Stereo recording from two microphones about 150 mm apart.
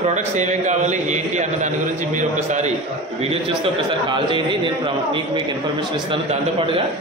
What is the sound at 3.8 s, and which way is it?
Speech, 35° right (ahead or behind).